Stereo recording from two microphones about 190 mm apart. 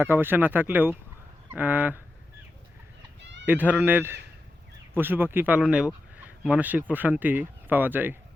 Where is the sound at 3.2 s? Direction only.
70° right (ahead or behind).